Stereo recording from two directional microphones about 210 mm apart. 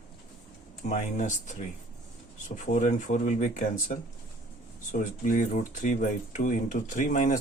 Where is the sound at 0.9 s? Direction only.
35° left (ahead or behind).